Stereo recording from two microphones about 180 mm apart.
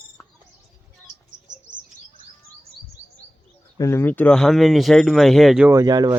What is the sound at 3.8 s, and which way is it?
Speech, 15° left (ahead or behind).